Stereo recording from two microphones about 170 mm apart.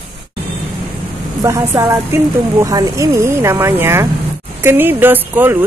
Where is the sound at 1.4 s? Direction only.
15° right (ahead or behind).